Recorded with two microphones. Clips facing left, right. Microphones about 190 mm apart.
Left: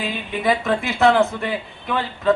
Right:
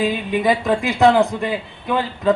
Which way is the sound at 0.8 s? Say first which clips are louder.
Right 2 dB; 15° right (ahead or behind).